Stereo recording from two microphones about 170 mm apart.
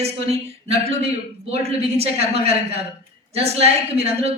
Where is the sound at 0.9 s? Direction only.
35° right (ahead or behind).